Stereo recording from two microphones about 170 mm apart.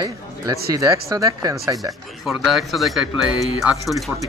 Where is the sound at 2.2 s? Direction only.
Centre (ahead or behind).